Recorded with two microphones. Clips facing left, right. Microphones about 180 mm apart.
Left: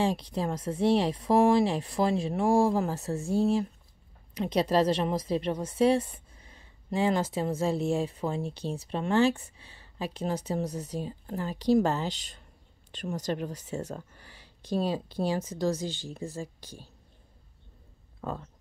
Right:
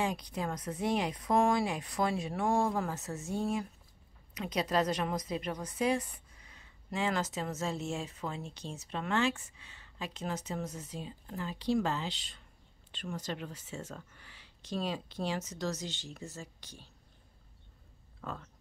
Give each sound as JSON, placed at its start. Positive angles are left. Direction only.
{"t": 0.0, "sound": "speech", "side_deg": 30}
{"t": 18.2, "sound": "speech", "side_deg": 35}